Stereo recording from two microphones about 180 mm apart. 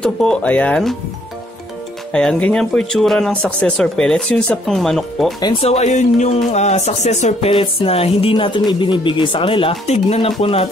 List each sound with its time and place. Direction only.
0.0 s speech: 5° left (ahead or behind)
2.1 s speech: 5° left (ahead or behind)
5.4 s speech: 30° left (ahead or behind)